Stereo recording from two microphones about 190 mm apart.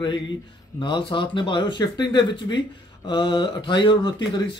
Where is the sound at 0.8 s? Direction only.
25° left (ahead or behind).